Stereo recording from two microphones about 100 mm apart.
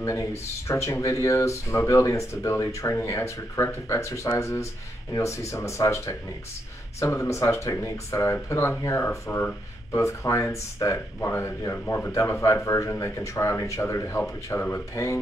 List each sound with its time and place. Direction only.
0.0 s speech: 30° left (ahead or behind)